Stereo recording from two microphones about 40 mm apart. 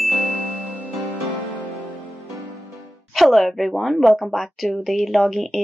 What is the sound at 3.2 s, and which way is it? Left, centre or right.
Speech, centre.